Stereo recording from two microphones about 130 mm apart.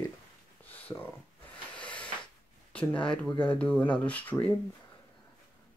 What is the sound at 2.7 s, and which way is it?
Speech, 10° left (ahead or behind).